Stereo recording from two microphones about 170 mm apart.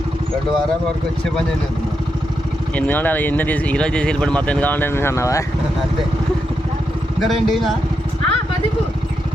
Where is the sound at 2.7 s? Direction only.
10° left (ahead or behind).